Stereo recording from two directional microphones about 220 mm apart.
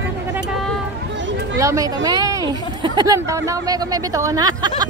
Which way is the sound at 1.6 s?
15° right (ahead or behind).